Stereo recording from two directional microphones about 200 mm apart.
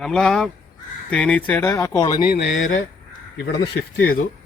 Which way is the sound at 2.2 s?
50° left (ahead or behind).